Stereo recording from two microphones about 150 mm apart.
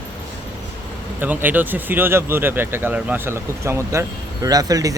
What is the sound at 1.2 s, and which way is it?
Speech, 10° right (ahead or behind).